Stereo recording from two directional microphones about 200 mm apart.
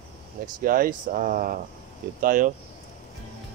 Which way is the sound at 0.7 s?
45° right (ahead or behind).